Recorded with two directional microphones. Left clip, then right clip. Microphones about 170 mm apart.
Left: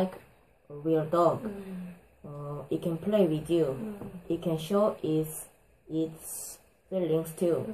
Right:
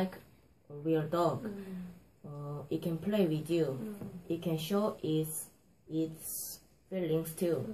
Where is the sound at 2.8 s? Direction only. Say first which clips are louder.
Left 6 dB; 20° right (ahead or behind).